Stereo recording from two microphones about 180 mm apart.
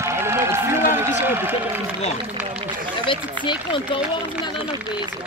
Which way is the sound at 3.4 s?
30° left (ahead or behind).